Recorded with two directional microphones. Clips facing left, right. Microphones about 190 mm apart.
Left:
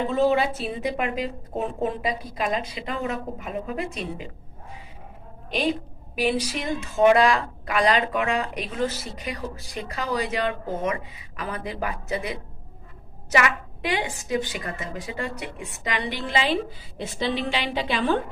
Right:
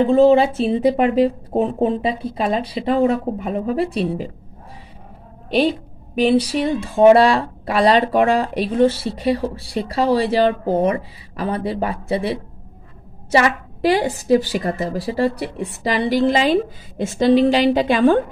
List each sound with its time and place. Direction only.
0.0 s speech: 30° right (ahead or behind)
5.5 s speech: 35° right (ahead or behind)